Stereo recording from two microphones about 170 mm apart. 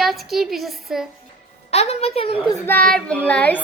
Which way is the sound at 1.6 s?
40° left (ahead or behind).